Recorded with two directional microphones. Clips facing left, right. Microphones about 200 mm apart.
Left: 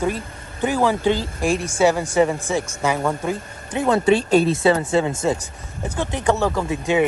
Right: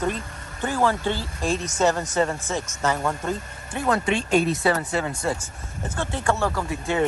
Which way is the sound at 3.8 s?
30° left (ahead or behind).